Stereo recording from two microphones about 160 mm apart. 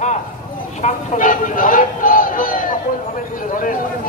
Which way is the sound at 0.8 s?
55° left (ahead or behind).